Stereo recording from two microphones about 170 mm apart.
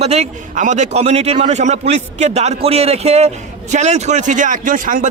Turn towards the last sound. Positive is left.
turn(degrees=-50)  # may be behind; listen again after turning